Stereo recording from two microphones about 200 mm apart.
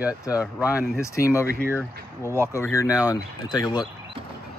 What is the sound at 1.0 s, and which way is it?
Speech, 15° left (ahead or behind).